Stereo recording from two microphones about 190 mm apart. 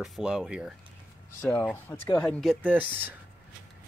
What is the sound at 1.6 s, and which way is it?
Speech, 10° left (ahead or behind).